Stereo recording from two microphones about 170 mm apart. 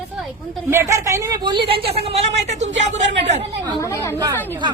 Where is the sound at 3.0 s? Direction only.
90° right.